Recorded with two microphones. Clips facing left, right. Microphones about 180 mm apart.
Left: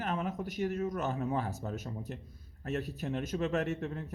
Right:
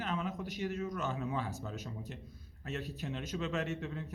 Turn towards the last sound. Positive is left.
turn(degrees=50)  # may be behind; listen again after turning